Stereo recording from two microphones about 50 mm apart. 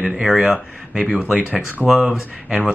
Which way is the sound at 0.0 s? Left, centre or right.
Centre.